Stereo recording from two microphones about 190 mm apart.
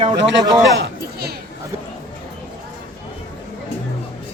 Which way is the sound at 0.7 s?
65° right (ahead or behind).